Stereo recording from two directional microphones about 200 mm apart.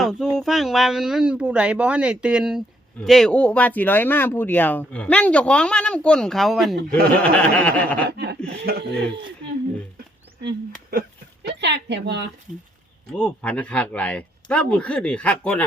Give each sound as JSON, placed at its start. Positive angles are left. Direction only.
{"t": 0.0, "sound": "speech", "side_deg": 0}
{"t": 6.7, "sound": "speech", "side_deg": -50}
{"t": 7.2, "sound": "chuckle", "side_deg": 5}
{"t": 8.4, "sound": "speech", "side_deg": -55}
{"t": 11.4, "sound": "speech", "side_deg": -60}
{"t": 13.1, "sound": "speech", "side_deg": 5}